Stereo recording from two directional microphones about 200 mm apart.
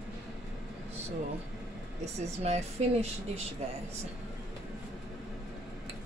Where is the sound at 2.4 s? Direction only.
35° right (ahead or behind).